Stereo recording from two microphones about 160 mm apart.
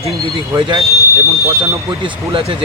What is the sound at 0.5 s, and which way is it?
Speech, 20° right (ahead or behind).